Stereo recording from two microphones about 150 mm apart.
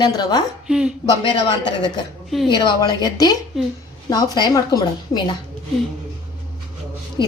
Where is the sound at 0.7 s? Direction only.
5° right (ahead or behind).